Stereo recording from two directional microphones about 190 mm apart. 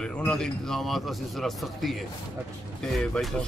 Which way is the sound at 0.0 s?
5° left (ahead or behind).